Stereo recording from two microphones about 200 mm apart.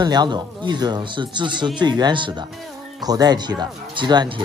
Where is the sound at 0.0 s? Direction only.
20° right (ahead or behind).